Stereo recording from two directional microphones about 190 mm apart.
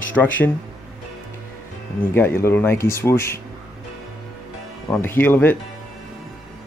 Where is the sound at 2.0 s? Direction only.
10° left (ahead or behind).